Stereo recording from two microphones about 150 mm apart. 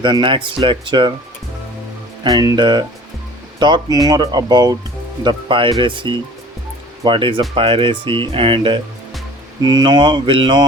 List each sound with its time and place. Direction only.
0.0 s speech: 30° right (ahead or behind)
2.2 s speech: 25° right (ahead or behind)